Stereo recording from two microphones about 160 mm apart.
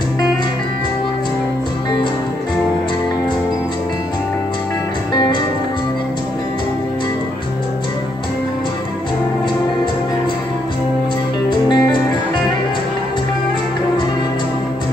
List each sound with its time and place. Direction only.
11.7 s music: 30° left (ahead or behind)